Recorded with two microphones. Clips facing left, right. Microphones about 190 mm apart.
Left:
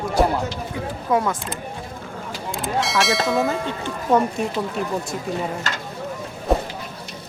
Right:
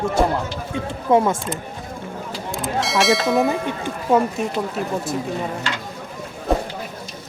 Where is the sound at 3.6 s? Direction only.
15° right (ahead or behind).